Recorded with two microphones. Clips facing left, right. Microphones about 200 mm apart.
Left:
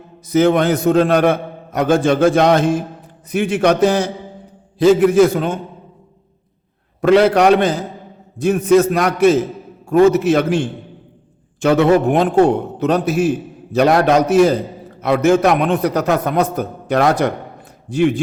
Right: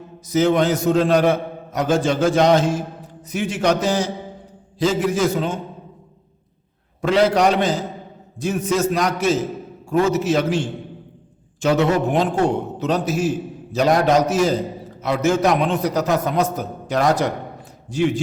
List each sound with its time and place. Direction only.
0.3 s a man's voice: 60° left (ahead or behind)
7.0 s a man's voice: 60° left (ahead or behind)